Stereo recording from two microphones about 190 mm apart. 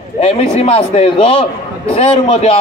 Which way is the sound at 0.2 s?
35° left (ahead or behind).